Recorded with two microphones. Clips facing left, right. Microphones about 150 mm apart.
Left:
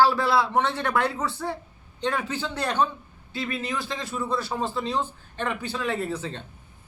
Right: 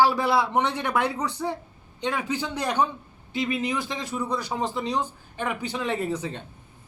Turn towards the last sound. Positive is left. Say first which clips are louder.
# right 1 dB
turn(degrees=-15)  # may be behind; listen again after turning